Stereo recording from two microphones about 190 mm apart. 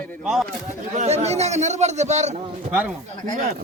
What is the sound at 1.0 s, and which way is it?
A man's voice, 35° right (ahead or behind).